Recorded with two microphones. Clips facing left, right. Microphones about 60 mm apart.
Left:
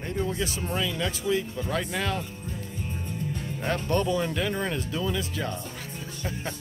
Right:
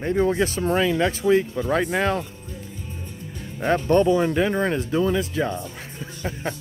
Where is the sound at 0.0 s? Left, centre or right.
Right.